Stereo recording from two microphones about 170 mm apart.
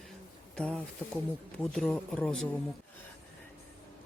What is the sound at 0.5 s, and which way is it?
Speech, 5° left (ahead or behind).